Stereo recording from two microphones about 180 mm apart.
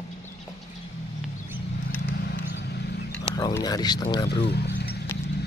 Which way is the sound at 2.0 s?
60° left (ahead or behind).